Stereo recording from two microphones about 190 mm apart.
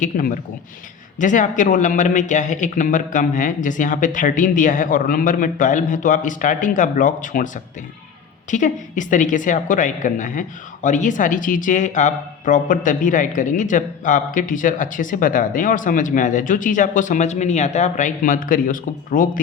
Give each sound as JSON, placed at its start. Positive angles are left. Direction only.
{"t": 0.0, "sound": "a woman's voice", "side_deg": 45}